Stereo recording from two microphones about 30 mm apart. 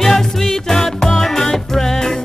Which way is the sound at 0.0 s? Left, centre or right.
Centre.